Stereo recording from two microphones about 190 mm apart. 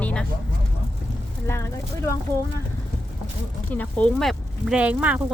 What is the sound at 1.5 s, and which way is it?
Speech, 15° left (ahead or behind).